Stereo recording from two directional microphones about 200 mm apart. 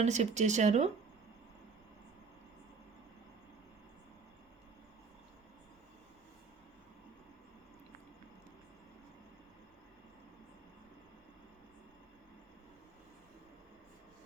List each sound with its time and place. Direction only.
0.0 s speech: 35° right (ahead or behind)